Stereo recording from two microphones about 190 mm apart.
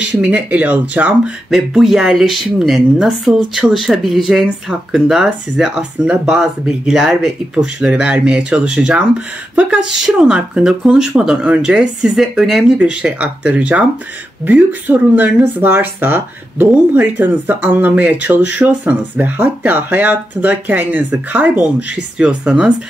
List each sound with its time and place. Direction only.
0.0 s speech: 10° right (ahead or behind)